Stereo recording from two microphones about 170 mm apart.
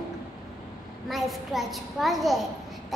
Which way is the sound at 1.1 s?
Centre (ahead or behind).